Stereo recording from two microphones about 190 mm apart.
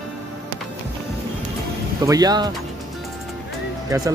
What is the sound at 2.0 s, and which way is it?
Speech, 20° right (ahead or behind).